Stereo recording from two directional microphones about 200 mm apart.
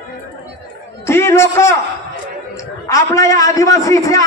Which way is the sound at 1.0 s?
15° left (ahead or behind).